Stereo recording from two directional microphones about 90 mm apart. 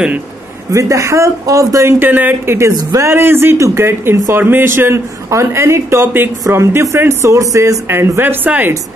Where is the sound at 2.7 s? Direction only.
35° right (ahead or behind).